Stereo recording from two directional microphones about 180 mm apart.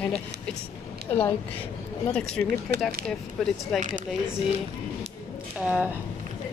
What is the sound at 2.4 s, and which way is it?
Speech, 10° left (ahead or behind).